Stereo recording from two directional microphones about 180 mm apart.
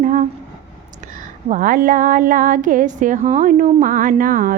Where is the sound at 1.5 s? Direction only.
50° right (ahead or behind).